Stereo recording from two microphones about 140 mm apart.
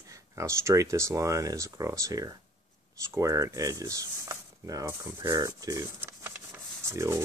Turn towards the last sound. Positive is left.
turn(degrees=-20)  # may be behind; listen again after turning